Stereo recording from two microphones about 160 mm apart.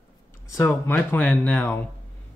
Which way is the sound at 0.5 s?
15° left (ahead or behind).